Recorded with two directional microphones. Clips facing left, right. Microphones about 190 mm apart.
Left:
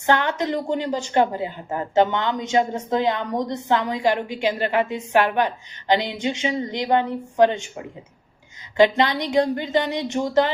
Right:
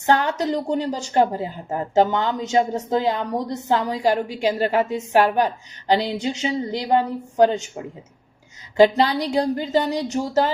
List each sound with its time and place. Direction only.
0.0 s a woman's voice: 35° right (ahead or behind)
8.7 s a woman's voice: 35° right (ahead or behind)